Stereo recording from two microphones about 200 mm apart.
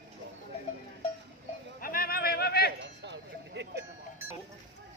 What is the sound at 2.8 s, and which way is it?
Music, 60° right (ahead or behind).